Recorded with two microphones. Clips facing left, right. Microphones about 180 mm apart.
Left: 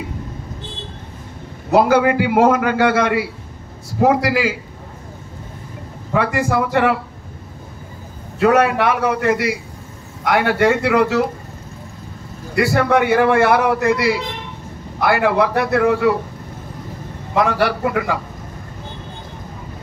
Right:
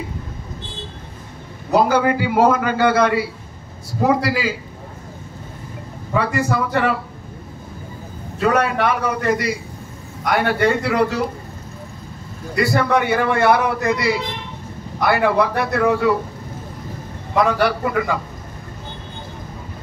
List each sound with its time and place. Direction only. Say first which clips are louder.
1.7 s a man's voice: left 2 dB; 65° left (ahead or behind)
6.1 s a man's voice: left 2 dB; 60° left (ahead or behind)
8.4 s a man's voice: left 4 dB; 65° left (ahead or behind)
12.5 s a man's voice: left 2 dB; 60° left (ahead or behind)
17.5 s a man's voice: even; 60° left (ahead or behind)